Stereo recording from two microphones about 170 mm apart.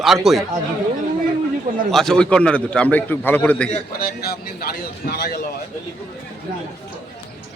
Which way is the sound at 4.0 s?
65° left (ahead or behind).